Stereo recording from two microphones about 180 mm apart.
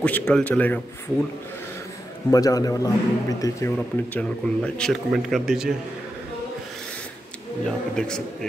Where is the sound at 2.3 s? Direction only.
20° left (ahead or behind).